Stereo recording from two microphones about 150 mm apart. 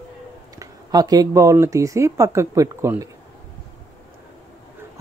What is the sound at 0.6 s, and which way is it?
Speech, 25° right (ahead or behind).